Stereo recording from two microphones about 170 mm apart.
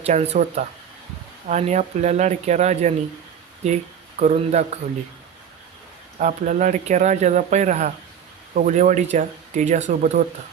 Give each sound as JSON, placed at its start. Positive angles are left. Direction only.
{"t": 0.0, "sound": "speech", "side_deg": -40}
{"t": 6.1, "sound": "speech", "side_deg": -45}